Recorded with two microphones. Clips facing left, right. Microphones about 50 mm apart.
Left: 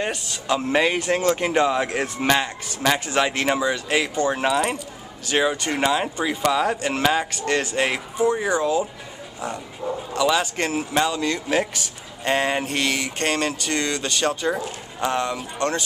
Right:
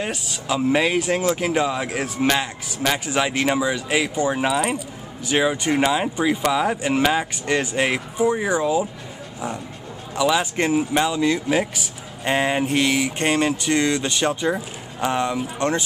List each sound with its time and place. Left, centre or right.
0.0 s speech: centre
10.1 s speech: centre